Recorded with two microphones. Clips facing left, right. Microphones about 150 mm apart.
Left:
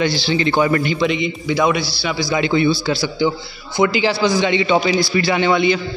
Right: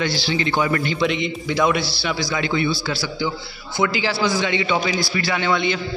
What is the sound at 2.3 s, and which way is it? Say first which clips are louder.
A man's voice: left 7 dB; 20° left (ahead or behind).